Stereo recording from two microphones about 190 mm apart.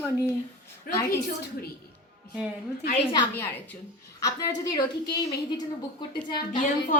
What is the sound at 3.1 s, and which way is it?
A woman's voice, 10° left (ahead or behind).